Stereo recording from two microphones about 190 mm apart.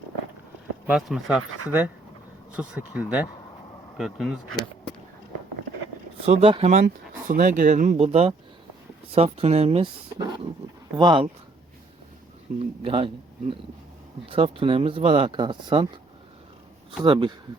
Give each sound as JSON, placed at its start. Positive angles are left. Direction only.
{"t": 0.9, "sound": "speech", "side_deg": 0}
{"t": 6.2, "sound": "speech", "side_deg": -30}
{"t": 6.8, "sound": "speech", "side_deg": -45}
{"t": 10.2, "sound": "wild animals", "side_deg": -25}
{"t": 10.9, "sound": "speech", "side_deg": -25}
{"t": 12.5, "sound": "speech", "side_deg": -30}
{"t": 17.0, "sound": "speech", "side_deg": -25}